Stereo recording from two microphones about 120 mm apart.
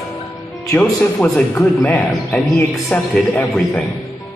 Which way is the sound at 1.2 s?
10° left (ahead or behind).